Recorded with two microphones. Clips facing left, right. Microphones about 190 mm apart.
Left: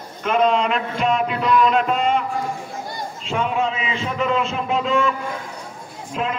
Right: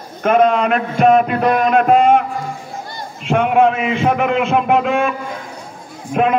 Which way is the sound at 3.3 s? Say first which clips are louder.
Right 9 dB; 60° right (ahead or behind).